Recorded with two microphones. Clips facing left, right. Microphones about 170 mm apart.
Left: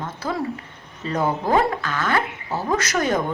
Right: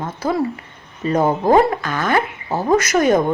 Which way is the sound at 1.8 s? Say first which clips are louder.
Right 4 dB; 15° right (ahead or behind).